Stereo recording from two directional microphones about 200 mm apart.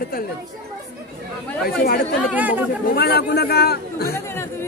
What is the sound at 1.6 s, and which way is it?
Speech, 45° left (ahead or behind).